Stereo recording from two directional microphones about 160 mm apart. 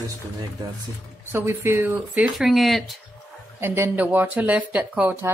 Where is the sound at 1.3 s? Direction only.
15° right (ahead or behind); by 3.0 s centre (ahead or behind).